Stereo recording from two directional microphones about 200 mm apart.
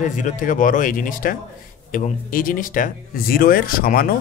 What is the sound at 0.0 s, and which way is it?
Speech, 40° left (ahead or behind).